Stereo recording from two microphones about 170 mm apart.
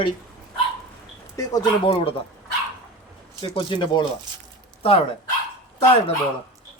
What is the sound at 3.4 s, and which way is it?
Speech, 30° left (ahead or behind).